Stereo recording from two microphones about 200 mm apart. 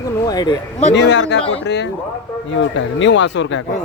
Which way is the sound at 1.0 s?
60° left (ahead or behind).